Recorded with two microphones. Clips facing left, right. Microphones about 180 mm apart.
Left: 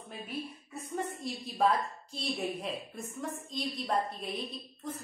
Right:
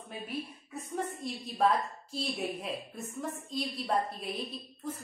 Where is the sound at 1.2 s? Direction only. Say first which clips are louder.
Even; centre (ahead or behind).